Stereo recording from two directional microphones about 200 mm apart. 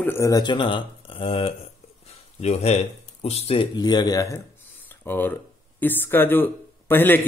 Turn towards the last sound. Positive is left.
turn(degrees=10)  # may be behind; listen again after turning